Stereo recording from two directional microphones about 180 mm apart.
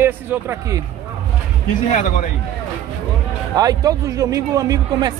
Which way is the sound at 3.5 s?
20° right (ahead or behind).